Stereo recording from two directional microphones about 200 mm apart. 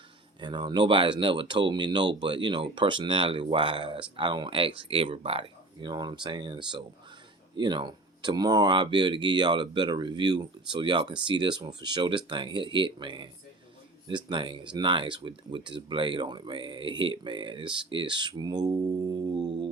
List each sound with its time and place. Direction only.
0.3 s speech: 20° right (ahead or behind)